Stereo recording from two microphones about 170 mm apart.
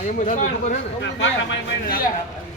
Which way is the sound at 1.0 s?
90° left.